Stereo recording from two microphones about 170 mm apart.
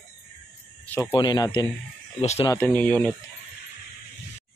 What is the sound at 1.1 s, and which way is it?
Speech, 25° left (ahead or behind).